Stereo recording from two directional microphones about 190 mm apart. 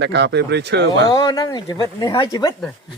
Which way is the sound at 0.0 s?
65° right (ahead or behind).